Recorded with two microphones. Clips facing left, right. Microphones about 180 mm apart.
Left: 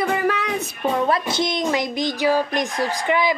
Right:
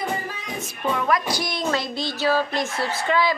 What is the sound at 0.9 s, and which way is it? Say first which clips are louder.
A woman's voice: left 2 dB; 30° left (ahead or behind).